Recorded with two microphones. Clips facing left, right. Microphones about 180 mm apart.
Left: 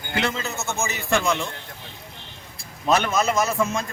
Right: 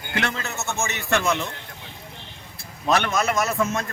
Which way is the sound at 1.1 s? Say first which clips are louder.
Even; 5° right (ahead or behind).